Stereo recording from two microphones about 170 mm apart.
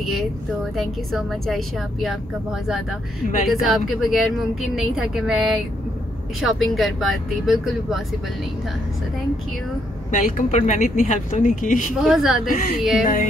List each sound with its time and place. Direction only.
0.7 s speech: centre (ahead or behind)
3.4 s speech: centre (ahead or behind)
10.1 s a woman's voice: 50° left (ahead or behind)
12.0 s speech: centre (ahead or behind)
12.4 s a woman's voice: 55° left (ahead or behind)